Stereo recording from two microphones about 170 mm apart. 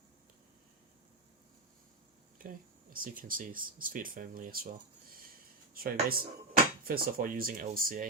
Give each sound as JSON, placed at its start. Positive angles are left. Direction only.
{"t": 2.4, "sound": "speech", "side_deg": -55}
{"t": 5.7, "sound": "speech", "side_deg": -60}